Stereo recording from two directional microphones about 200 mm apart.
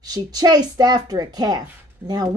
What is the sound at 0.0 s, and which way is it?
Speech, 20° right (ahead or behind).